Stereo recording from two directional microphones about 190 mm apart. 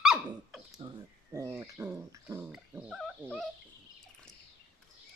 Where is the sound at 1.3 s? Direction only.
15° right (ahead or behind).